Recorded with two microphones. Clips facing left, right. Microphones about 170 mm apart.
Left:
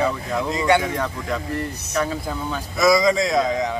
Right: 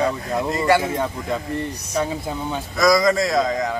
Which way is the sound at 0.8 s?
25° right (ahead or behind).